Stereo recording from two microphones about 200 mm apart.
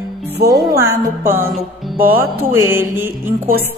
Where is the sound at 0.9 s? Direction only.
10° right (ahead or behind).